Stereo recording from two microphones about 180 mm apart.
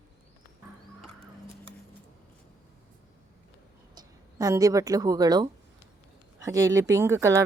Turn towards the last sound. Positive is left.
turn(degrees=-15)  # may be behind; listen again after turning